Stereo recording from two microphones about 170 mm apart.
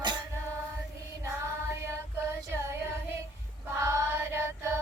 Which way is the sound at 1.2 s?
15° right (ahead or behind).